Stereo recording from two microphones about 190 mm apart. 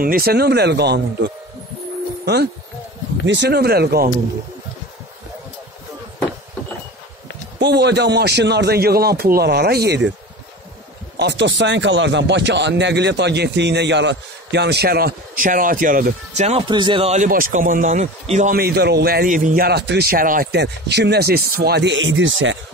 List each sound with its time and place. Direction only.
0.0 s speech: 50° right (ahead or behind)
7.5 s speech: 60° right (ahead or behind)
11.1 s speech: 65° right (ahead or behind); by 16.4 s 45° right (ahead or behind)
16.4 s speech: 30° right (ahead or behind)
18.6 s speech: 55° right (ahead or behind); by 22.6 s 75° right (ahead or behind)